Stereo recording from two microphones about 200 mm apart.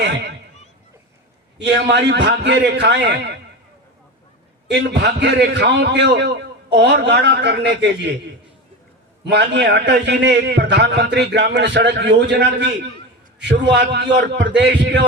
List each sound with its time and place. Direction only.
0.0 s a man's voice: 60° right (ahead or behind)
1.5 s a man's voice: 60° right (ahead or behind)
4.7 s a man's voice: 60° right (ahead or behind)
9.2 s a man's voice: 60° right (ahead or behind)